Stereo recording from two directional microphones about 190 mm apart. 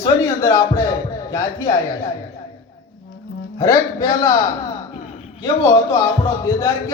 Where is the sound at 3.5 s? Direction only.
20° left (ahead or behind).